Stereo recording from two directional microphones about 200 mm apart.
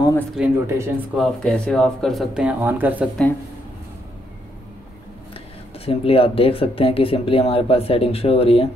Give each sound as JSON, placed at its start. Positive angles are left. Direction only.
{"t": 0.4, "sound": "speech", "side_deg": -10}
{"t": 1.1, "sound": "speech", "side_deg": 0}
{"t": 5.9, "sound": "speech", "side_deg": 30}